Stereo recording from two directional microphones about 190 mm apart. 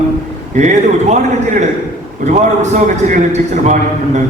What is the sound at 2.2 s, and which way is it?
A man's voice, 40° right (ahead or behind).